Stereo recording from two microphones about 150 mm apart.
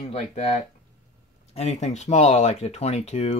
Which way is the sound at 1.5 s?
45° left (ahead or behind).